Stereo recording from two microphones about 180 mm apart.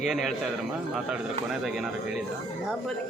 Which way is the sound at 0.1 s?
Centre (ahead or behind).